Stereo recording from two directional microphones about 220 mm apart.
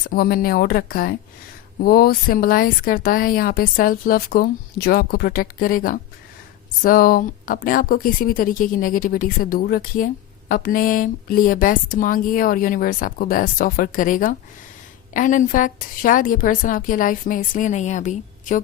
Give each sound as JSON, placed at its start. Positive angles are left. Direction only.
{"t": 0.0, "sound": "speech", "side_deg": 45}